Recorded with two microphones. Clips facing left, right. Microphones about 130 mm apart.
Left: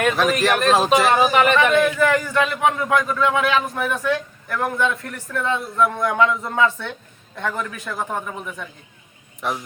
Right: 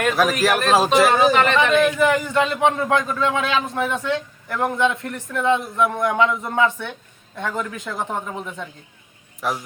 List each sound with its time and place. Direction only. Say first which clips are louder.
0.0 s speech: even; 5° right (ahead or behind)
1.8 s a man's voice: right 1 dB; 15° right (ahead or behind)
9.4 s speech: right 1 dB; centre (ahead or behind)